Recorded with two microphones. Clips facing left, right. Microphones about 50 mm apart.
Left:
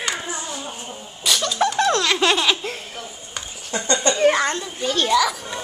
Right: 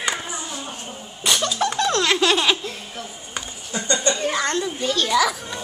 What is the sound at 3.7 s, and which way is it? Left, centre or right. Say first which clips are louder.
Speech: left 2 dB; left.